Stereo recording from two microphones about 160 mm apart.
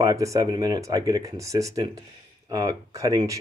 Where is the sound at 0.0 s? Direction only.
20° right (ahead or behind).